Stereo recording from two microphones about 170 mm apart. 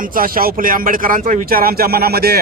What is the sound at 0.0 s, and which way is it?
Speech, 55° right (ahead or behind).